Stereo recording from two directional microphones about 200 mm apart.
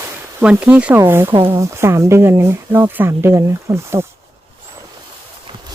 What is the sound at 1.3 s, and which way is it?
Speech, 25° right (ahead or behind).